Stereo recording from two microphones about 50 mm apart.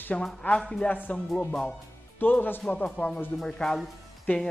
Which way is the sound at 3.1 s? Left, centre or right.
Centre.